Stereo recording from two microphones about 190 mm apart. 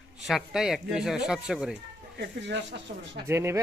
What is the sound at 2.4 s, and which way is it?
Speech, 65° right (ahead or behind).